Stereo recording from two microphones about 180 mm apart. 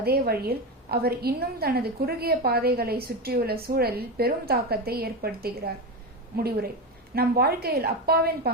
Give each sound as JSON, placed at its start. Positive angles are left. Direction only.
{"t": 0.0, "sound": "a woman's voice", "side_deg": -60}